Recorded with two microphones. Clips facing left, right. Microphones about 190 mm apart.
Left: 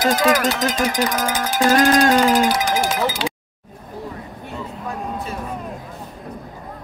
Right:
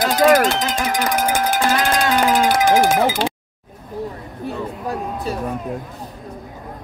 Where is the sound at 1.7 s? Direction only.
45° left (ahead or behind).